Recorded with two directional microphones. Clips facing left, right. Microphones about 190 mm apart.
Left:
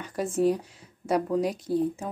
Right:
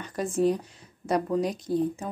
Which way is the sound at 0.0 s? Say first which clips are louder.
Even; 5° left (ahead or behind).